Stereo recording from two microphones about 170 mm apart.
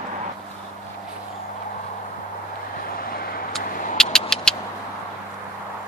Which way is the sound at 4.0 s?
5° left (ahead or behind).